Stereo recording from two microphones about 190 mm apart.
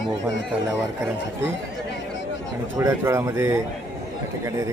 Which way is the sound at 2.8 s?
15° right (ahead or behind).